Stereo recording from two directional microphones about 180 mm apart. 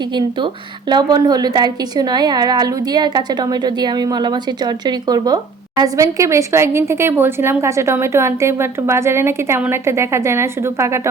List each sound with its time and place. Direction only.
0.9 s a woman's voice: 25° right (ahead or behind)